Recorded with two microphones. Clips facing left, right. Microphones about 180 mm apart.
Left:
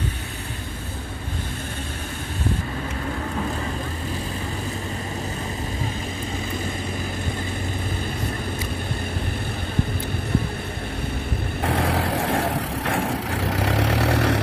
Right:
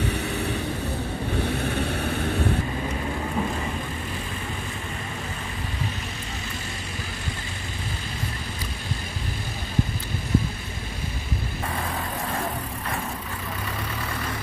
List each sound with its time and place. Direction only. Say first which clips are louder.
11.6 s vehicle: left 10 dB; 75° left (ahead or behind)